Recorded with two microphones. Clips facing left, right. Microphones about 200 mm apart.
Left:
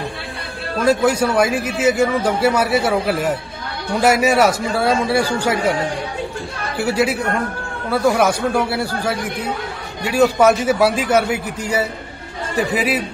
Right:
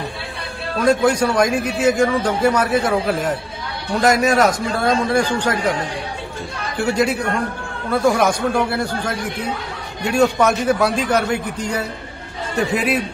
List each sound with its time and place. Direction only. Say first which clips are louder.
0.8 s a man's voice: even; 5° left (ahead or behind)
6.8 s a man's voice: even; 5° left (ahead or behind)